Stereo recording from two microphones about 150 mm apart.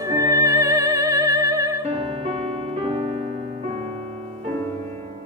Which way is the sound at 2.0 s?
40° right (ahead or behind).